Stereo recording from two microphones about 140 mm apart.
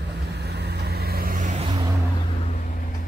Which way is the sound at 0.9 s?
90° right.